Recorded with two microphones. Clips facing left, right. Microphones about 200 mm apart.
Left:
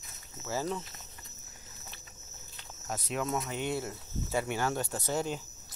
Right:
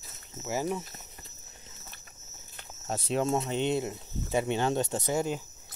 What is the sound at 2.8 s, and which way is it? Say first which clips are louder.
Speech: right 5 dB; 30° right (ahead or behind).